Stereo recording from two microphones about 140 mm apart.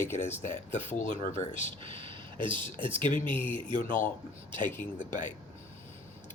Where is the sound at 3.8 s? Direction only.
70° left (ahead or behind).